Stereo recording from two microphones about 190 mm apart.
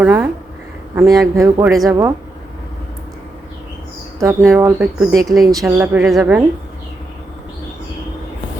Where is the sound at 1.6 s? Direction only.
Centre (ahead or behind).